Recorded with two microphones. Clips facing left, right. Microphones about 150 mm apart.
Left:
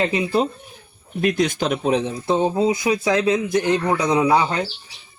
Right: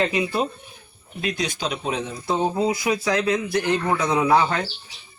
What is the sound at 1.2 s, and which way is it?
Speech, 50° left (ahead or behind).